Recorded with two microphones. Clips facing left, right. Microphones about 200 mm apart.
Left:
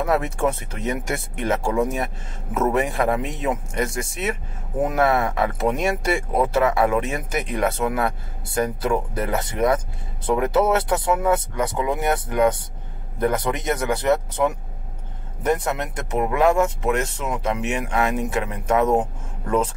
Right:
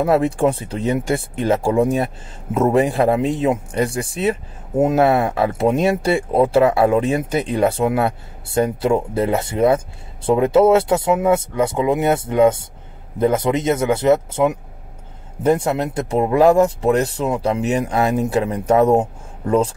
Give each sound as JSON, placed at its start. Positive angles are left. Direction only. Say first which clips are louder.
{"t": 0.0, "sound": "speech", "louder": "right 6 dB", "side_deg": -30}